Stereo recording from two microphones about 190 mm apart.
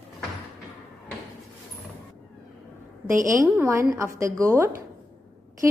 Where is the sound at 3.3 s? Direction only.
15° right (ahead or behind).